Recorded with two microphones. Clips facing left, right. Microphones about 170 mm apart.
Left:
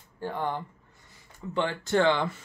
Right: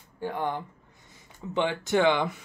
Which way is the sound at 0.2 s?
10° right (ahead or behind).